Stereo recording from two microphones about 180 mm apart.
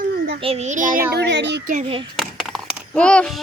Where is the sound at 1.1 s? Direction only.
75° right (ahead or behind).